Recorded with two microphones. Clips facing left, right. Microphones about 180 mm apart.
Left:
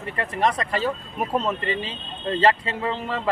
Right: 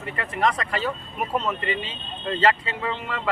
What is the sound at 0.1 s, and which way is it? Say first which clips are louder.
Speech: left 1 dB; 30° left (ahead or behind).